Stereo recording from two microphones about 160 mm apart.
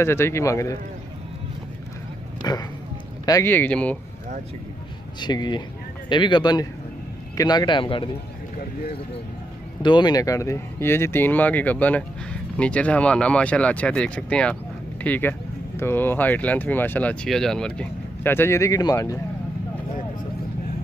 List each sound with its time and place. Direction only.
0.0 s speech: 15° left (ahead or behind)
2.4 s a man's voice: 25° left (ahead or behind); by 4.0 s 10° left (ahead or behind)
5.2 s a man's voice: 25° left (ahead or behind)
9.8 s speech: 30° left (ahead or behind)